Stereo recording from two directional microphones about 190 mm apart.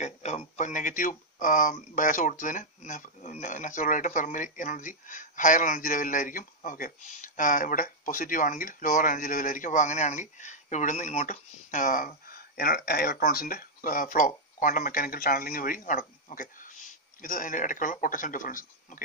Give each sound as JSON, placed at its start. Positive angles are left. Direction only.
{"t": 0.0, "sound": "speech", "side_deg": 35}